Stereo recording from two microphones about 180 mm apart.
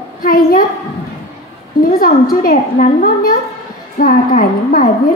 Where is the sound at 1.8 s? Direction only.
55° left (ahead or behind).